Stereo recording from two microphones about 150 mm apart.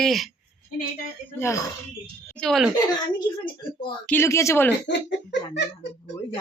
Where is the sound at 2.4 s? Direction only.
Centre (ahead or behind).